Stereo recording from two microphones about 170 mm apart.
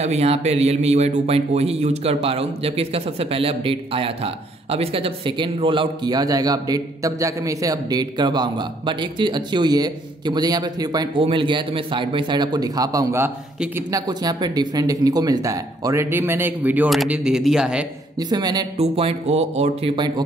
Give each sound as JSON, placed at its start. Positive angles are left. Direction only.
{"t": 0.0, "sound": "a man's voice", "side_deg": -40}
{"t": 14.0, "sound": "speech", "side_deg": -25}
{"t": 18.3, "sound": "a man's voice", "side_deg": -25}
{"t": 18.8, "sound": "a man's voice", "side_deg": -35}